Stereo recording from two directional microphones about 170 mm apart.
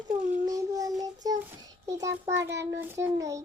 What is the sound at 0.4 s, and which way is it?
Child singing, 20° right (ahead or behind).